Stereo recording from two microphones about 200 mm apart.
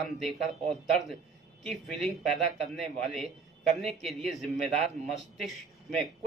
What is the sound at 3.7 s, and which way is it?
Speech, 30° right (ahead or behind).